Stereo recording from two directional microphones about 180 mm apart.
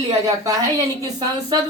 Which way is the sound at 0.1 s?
20° right (ahead or behind).